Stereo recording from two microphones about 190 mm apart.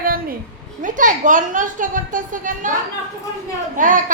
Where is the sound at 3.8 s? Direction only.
45° right (ahead or behind).